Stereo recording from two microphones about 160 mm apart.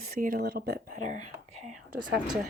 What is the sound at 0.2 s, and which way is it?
Speech, 70° right (ahead or behind).